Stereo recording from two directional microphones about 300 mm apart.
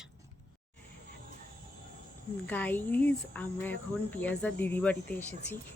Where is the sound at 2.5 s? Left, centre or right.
Centre.